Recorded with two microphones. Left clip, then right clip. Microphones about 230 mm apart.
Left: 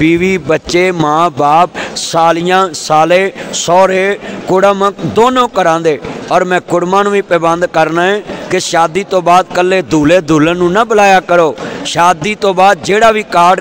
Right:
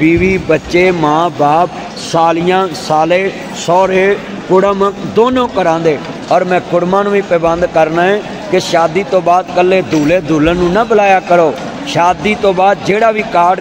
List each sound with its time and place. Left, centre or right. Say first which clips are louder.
0.0 s speech: even; left